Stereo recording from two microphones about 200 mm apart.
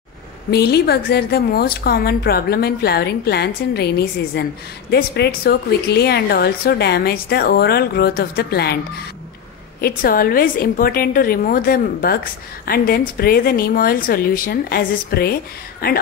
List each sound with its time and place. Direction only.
0.5 s a woman's voice: 55° left (ahead or behind)
9.8 s a woman's voice: 50° left (ahead or behind)